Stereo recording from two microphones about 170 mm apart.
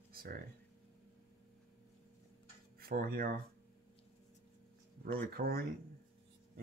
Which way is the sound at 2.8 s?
60° right (ahead or behind).